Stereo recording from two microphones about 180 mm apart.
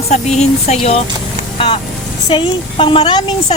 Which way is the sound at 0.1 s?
40° left (ahead or behind).